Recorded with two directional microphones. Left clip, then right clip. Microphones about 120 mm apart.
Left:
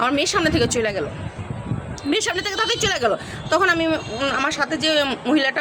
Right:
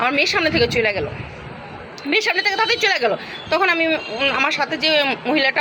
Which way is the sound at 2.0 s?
40° left (ahead or behind).